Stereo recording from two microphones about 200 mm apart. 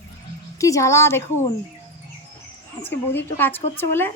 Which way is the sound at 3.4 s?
10° left (ahead or behind).